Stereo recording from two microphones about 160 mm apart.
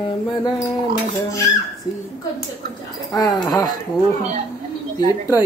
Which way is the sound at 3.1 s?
25° left (ahead or behind).